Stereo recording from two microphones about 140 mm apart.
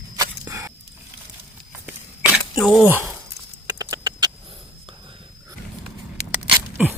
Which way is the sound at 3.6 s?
25° right (ahead or behind).